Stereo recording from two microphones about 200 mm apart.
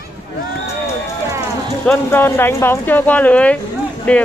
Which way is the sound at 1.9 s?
10° left (ahead or behind).